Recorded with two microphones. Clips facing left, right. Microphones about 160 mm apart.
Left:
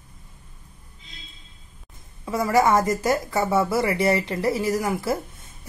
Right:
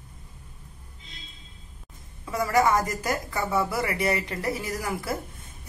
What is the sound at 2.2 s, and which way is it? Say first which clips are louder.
A woman's voice: left 3 dB; 25° left (ahead or behind).